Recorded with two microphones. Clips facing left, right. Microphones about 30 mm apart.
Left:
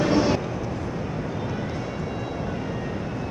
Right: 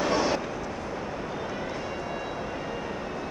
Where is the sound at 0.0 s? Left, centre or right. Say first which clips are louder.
Left 4 dB; centre.